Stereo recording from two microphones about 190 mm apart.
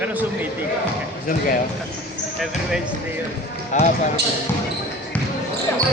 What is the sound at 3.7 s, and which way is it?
Speech, 40° left (ahead or behind).